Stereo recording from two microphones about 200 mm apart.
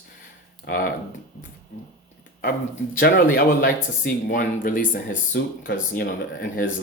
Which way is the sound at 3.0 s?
45° left (ahead or behind).